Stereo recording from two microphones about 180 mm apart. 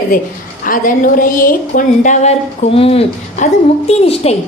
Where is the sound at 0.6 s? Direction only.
50° left (ahead or behind).